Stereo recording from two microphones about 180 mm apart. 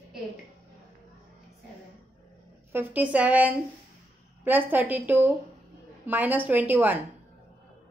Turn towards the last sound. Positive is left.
turn(degrees=-10)  # may be behind; listen again after turning